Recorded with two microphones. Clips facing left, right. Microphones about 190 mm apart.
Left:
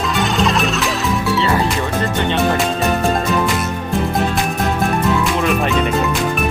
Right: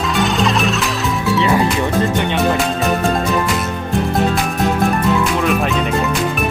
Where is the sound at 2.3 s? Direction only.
Centre (ahead or behind).